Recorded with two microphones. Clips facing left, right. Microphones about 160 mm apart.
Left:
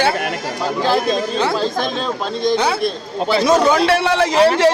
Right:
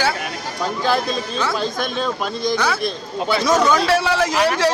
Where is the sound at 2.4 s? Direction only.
25° left (ahead or behind).